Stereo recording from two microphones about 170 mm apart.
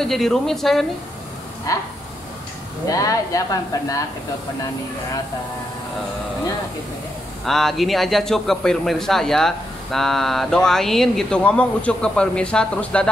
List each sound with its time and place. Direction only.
0.0 s speech: centre (ahead or behind)
1.7 s speech: 20° left (ahead or behind)
2.9 s speech: 20° left (ahead or behind)
7.4 s speech: centre (ahead or behind)